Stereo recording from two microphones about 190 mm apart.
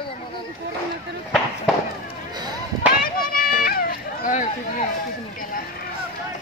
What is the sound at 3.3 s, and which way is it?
Run, 50° left (ahead or behind).